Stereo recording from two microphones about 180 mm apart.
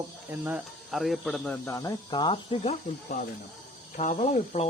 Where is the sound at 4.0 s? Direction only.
40° left (ahead or behind).